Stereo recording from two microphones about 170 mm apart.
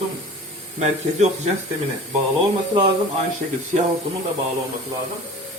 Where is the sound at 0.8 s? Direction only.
40° right (ahead or behind).